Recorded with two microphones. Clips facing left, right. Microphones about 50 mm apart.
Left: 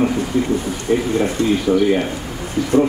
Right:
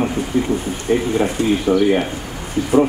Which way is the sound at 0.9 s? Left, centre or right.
Centre.